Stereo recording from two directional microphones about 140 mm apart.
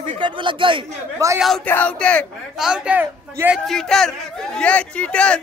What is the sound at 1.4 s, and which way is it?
A man's voice, centre (ahead or behind).